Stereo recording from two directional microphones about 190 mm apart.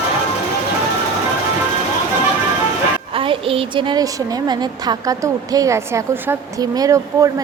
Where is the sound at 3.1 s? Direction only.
30° right (ahead or behind).